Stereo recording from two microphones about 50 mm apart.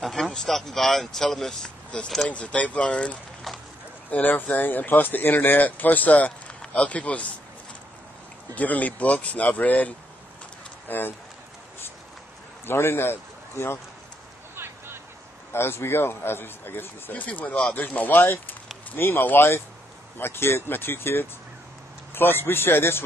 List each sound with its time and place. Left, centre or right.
0.0 s speech: centre
0.3 s speech: centre
3.5 s a sound: centre
4.1 s speech: left
8.5 s speech: left
10.9 s speech: left
12.6 s a man's voice: left
14.5 s vehicle: right
15.5 s speech: left
17.1 s speech: left